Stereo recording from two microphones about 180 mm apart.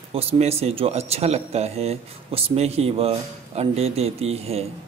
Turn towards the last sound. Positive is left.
turn(degrees=-35)  # may be behind; listen again after turning